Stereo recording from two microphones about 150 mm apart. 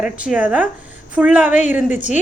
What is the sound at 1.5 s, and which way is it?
Speech, 50° left (ahead or behind).